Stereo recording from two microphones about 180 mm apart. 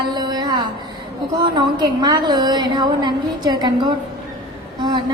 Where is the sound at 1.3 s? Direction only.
25° right (ahead or behind).